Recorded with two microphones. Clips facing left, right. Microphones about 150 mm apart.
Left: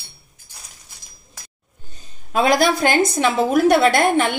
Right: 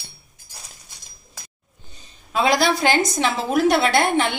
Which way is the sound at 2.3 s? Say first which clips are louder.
Left 2 dB; 50° left (ahead or behind).